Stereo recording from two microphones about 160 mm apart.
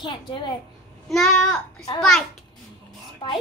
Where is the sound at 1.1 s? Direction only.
5° left (ahead or behind).